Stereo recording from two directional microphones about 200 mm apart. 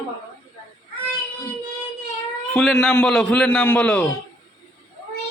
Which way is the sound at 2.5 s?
Centre (ahead or behind).